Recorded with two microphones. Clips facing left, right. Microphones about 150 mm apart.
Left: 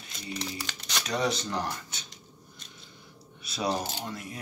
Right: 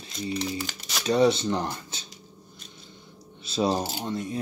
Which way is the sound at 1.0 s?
30° right (ahead or behind).